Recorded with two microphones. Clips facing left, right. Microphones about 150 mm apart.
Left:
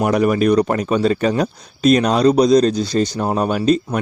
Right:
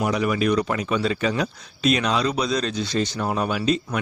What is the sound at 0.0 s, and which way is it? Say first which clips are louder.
Speech: left 7 dB; 50° left (ahead or behind).